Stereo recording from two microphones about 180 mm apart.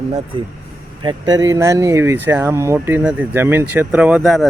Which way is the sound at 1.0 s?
20° right (ahead or behind).